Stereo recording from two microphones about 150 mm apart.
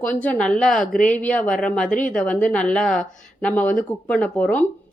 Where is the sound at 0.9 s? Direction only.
60° left (ahead or behind).